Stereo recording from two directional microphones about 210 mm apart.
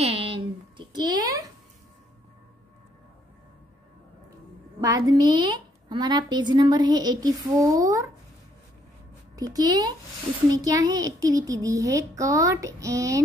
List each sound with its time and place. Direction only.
0.0 s a sound: 25° right (ahead or behind)
4.7 s a woman's voice: 15° right (ahead or behind)
9.3 s a woman's voice: 15° right (ahead or behind)